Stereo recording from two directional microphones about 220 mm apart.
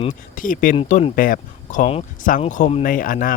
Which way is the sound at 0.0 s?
35° left (ahead or behind).